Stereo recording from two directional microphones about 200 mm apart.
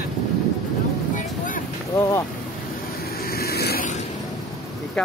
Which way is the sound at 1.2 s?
40° left (ahead or behind).